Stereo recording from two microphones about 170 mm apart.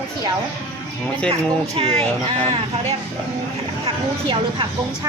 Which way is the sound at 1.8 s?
30° right (ahead or behind).